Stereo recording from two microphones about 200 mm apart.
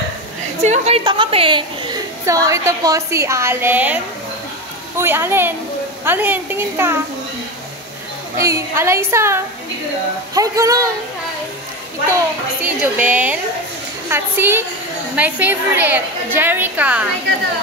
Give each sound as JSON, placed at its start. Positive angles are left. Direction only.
{"t": 0.6, "sound": "a woman's voice", "side_deg": -30}
{"t": 8.4, "sound": "a woman's voice", "side_deg": -15}
{"t": 12.6, "sound": "a woman's voice", "side_deg": -10}